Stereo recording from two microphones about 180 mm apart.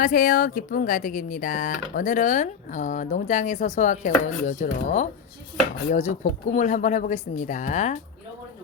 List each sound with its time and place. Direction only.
0.0 s speech: 50° left (ahead or behind)